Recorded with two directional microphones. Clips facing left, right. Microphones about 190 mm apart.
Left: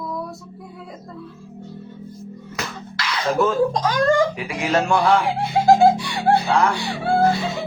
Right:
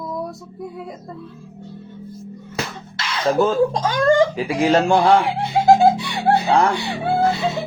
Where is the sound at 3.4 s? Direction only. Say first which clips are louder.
Even; 30° right (ahead or behind).